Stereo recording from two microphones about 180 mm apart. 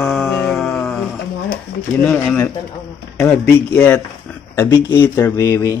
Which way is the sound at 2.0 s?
5° left (ahead or behind).